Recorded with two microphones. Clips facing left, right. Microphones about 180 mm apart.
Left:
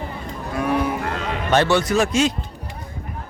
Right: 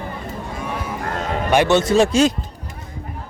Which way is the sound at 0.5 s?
65° left (ahead or behind).